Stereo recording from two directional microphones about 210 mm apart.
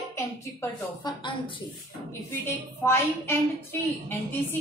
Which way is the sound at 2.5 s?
10° left (ahead or behind).